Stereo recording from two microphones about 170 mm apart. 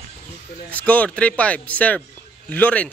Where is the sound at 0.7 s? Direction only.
10° left (ahead or behind).